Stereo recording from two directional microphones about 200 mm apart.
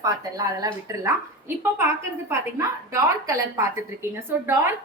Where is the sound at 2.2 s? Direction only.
15° right (ahead or behind).